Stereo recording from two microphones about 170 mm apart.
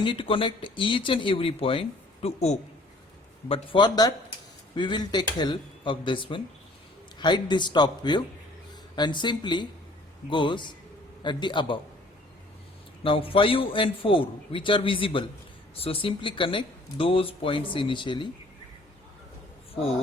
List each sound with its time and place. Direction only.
0.0 s speech: 30° left (ahead or behind)
13.0 s speech: 30° left (ahead or behind)